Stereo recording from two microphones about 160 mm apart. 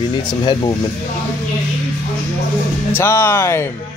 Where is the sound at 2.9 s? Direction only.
15° left (ahead or behind).